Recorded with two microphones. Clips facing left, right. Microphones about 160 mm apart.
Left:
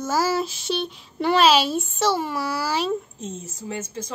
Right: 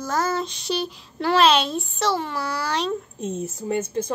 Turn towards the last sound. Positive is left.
turn(degrees=-55)  # may be behind; listen again after turning